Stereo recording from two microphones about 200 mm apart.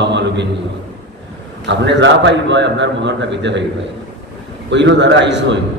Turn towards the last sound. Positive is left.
turn(degrees=-60)  # may be behind; listen again after turning